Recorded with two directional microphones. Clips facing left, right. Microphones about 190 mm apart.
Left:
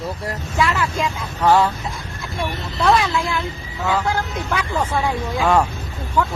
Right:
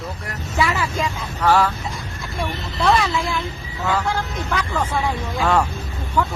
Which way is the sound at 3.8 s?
10° left (ahead or behind).